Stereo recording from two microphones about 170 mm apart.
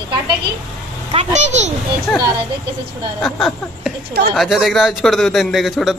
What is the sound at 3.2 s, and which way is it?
A man's voice, centre (ahead or behind).